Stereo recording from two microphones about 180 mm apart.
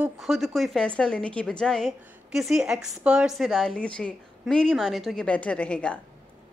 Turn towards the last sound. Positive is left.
turn(degrees=5)  # may be behind; listen again after turning